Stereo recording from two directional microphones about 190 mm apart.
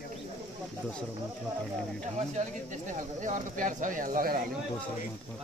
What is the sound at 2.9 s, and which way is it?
Speech, 40° right (ahead or behind).